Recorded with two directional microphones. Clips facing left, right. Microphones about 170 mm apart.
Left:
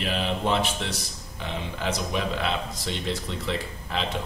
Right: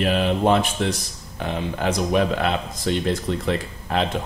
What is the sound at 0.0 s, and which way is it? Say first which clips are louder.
Speech: right 7 dB; 50° right (ahead or behind).